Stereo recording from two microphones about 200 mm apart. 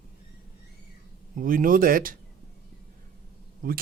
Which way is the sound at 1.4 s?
45° right (ahead or behind).